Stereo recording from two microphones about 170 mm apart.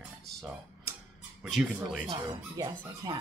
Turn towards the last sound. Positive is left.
turn(degrees=-20)  # may be behind; listen again after turning